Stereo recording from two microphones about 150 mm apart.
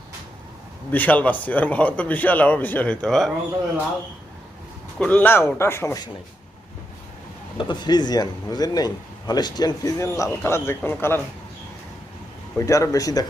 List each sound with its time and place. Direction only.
0.9 s speech: 10° left (ahead or behind)
4.9 s speech: 10° left (ahead or behind)
7.6 s speech: 30° left (ahead or behind)
12.5 s speech: 20° left (ahead or behind)